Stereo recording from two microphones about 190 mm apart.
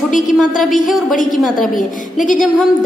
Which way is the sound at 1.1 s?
45° left (ahead or behind).